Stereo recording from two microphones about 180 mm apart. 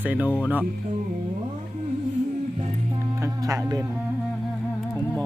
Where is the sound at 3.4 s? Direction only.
20° right (ahead or behind).